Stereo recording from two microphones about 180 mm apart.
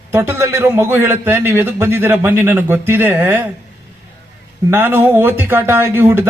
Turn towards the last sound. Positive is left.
turn(degrees=-10)  # may be behind; listen again after turning